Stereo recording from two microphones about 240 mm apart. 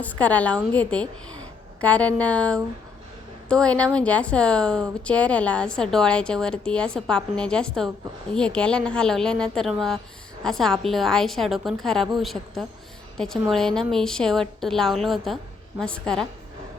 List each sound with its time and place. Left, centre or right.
0.0 s a woman's voice: centre